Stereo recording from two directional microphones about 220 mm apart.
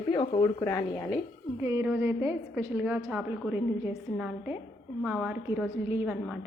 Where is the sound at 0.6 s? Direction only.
15° left (ahead or behind).